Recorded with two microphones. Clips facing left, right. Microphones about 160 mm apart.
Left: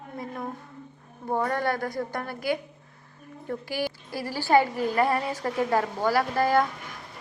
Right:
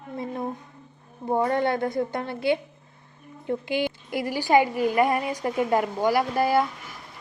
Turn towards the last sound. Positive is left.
turn(degrees=-10)  # may be behind; listen again after turning